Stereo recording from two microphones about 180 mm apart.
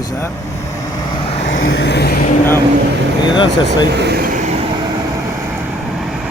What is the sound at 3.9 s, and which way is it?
Vehicle, 65° right (ahead or behind).